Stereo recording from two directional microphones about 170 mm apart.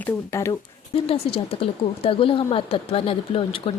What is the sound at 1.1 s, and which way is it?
Speech, 35° left (ahead or behind).